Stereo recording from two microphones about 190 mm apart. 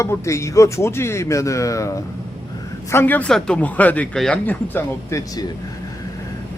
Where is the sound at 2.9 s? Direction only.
10° left (ahead or behind).